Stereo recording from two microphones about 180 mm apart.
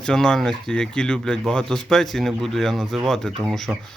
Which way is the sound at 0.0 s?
5° left (ahead or behind).